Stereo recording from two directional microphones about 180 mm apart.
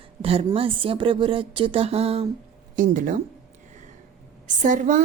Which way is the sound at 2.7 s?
45° right (ahead or behind).